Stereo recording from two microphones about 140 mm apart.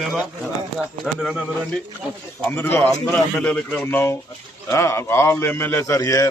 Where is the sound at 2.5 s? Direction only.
15° left (ahead or behind).